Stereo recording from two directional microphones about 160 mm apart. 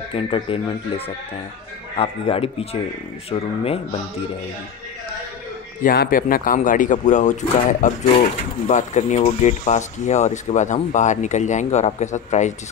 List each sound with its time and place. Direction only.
0.1 s speech: 35° left (ahead or behind)
5.8 s speech: 60° left (ahead or behind)